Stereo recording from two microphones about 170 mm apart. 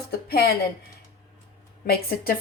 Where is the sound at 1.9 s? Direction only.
60° left (ahead or behind).